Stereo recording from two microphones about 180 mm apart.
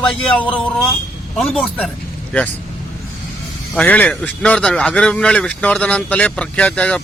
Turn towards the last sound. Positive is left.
turn(degrees=5)  # may be behind; listen again after turning